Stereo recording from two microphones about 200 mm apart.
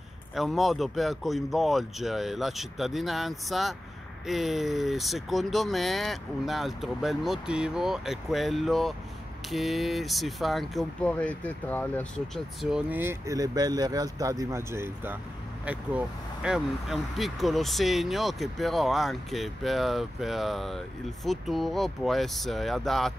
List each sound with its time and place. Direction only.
0.3 s speech: centre (ahead or behind)
12.6 s speech: 5° right (ahead or behind)